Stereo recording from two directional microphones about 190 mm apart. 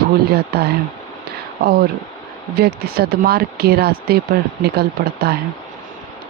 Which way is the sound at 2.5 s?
55° right (ahead or behind).